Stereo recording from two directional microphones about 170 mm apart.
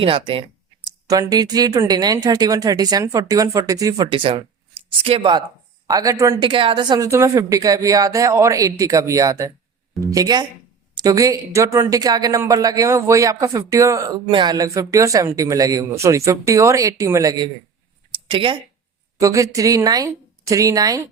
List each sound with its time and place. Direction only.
0.0 s speech: 30° right (ahead or behind)
0.9 s speech: 20° right (ahead or behind)
19.2 s speech: 20° right (ahead or behind)